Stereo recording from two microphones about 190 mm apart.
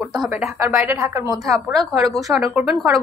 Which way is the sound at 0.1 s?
Centre (ahead or behind).